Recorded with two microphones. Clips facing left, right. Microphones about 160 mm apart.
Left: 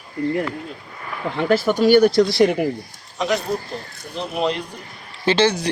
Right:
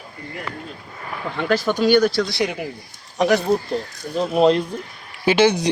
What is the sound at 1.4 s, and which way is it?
Speech, 20° left (ahead or behind).